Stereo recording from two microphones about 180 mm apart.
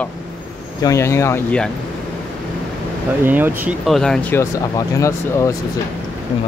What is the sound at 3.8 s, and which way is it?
Speech, centre (ahead or behind).